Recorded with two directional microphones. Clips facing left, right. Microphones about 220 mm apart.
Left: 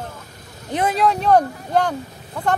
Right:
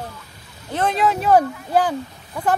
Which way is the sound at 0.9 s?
Centre (ahead or behind).